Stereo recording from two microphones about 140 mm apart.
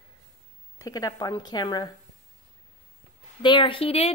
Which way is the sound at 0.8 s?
25° left (ahead or behind).